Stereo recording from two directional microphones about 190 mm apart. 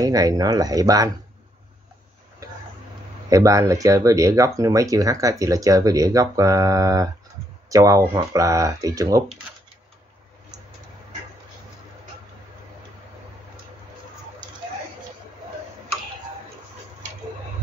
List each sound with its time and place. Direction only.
0.0 s speech: 20° right (ahead or behind)
3.3 s speech: 15° right (ahead or behind)